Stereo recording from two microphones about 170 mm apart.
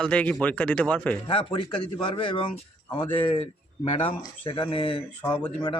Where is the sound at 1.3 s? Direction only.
30° left (ahead or behind).